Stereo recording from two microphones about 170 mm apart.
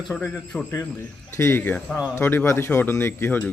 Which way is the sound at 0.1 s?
10° left (ahead or behind).